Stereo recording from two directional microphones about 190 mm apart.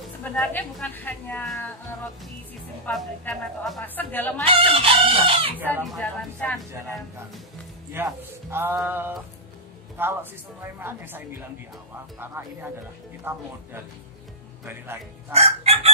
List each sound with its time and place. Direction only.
0.2 s speech: 10° left (ahead or behind)
2.8 s speech: 5° left (ahead or behind)
4.5 s speech: 30° right (ahead or behind)
5.7 s speech: 5° left (ahead or behind)
7.9 s speech: 10° right (ahead or behind)
13.3 s speech: 10° right (ahead or behind)
14.6 s speech: 10° right (ahead or behind)
15.3 s chicken: 35° right (ahead or behind)